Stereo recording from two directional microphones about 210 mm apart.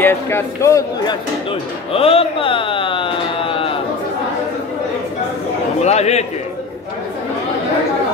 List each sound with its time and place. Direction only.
0.0 s a man's voice: 10° left (ahead or behind)
1.9 s a sound: 25° left (ahead or behind)
5.8 s a man's voice: 30° left (ahead or behind)